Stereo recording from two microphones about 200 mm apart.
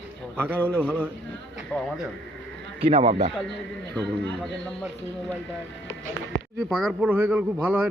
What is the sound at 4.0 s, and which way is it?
Speech, 5° left (ahead or behind).